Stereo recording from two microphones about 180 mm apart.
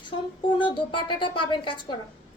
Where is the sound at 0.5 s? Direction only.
25° left (ahead or behind).